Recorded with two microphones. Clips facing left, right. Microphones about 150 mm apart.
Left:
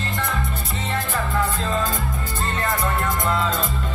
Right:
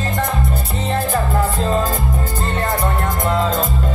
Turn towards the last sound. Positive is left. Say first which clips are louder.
# right 4 dB
turn(degrees=-45)  # may be behind; listen again after turning